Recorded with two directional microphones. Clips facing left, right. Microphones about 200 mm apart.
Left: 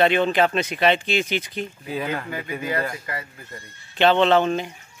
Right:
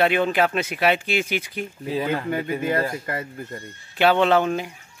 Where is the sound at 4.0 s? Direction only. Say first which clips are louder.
Left 1 dB; 10° right (ahead or behind).